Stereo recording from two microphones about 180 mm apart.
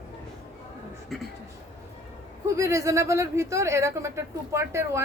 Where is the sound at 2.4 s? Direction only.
15° right (ahead or behind).